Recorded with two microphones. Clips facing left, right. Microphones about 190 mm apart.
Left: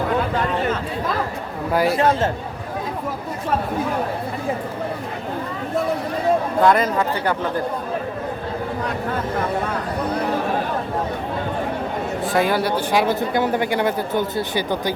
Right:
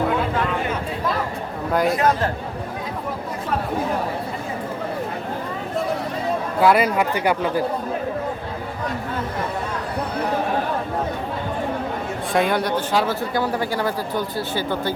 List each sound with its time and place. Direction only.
1.7 s speech: 5° left (ahead or behind)
2.0 s speech: 25° left (ahead or behind)
6.6 s speech: 10° right (ahead or behind)
12.3 s speech: 5° left (ahead or behind)